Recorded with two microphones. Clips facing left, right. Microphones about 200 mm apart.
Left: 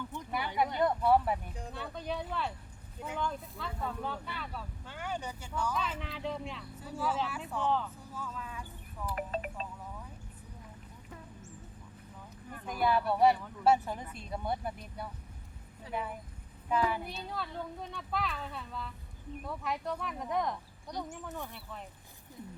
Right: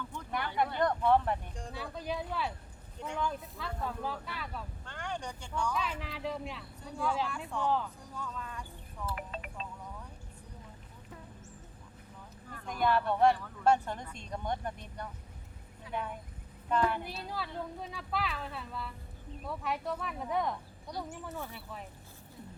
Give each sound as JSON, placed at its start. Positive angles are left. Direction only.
{"t": 0.3, "sound": "speech", "side_deg": 5}
{"t": 9.3, "sound": "speech", "side_deg": 40}
{"t": 12.6, "sound": "speech", "side_deg": 5}